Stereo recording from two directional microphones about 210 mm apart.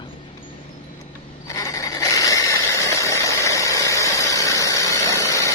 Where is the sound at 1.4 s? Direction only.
15° left (ahead or behind).